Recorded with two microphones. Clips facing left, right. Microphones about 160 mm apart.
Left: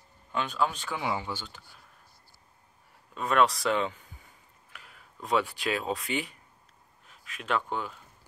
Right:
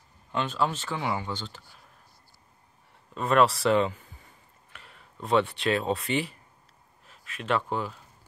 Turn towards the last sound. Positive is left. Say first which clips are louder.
# right 3 dB
turn(degrees=0)  # may be behind; listen again after turning